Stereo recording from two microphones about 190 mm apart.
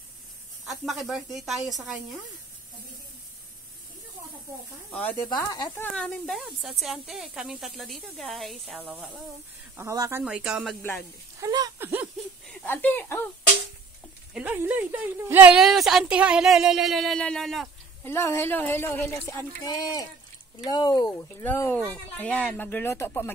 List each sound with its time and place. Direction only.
0.7 s a woman's voice: centre (ahead or behind)
5.5 s speech: 20° left (ahead or behind)
5.9 s a woman's voice: 5° left (ahead or behind); by 10.2 s 15° right (ahead or behind)
10.2 s a woman's voice: 5° right (ahead or behind)
11.3 s a sound: 20° right (ahead or behind)
12.5 s speech: 10° left (ahead or behind)
14.3 s a woman's voice: 10° right (ahead or behind)
18.0 s a woman's voice: 15° left (ahead or behind)
21.4 s a woman's voice: 10° left (ahead or behind)